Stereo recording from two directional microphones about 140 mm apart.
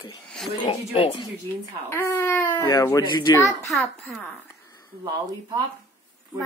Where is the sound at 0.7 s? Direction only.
40° left (ahead or behind).